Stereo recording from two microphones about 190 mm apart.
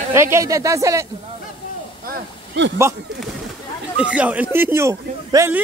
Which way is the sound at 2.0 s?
50° right (ahead or behind).